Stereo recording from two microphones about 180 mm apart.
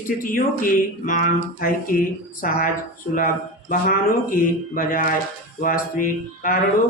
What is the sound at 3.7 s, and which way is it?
Speech, 50° left (ahead or behind).